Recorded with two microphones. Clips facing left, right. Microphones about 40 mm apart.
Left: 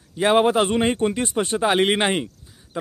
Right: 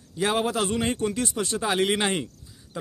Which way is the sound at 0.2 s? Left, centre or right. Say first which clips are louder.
Left 7 dB; left.